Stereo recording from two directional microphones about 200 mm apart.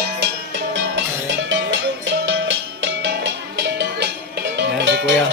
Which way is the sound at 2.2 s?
65° right (ahead or behind).